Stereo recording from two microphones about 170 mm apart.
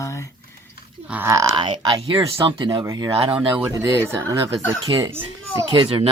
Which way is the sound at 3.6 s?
10° right (ahead or behind).